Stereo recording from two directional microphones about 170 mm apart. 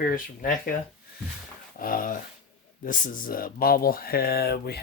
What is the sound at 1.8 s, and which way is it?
Speech, 55° left (ahead or behind).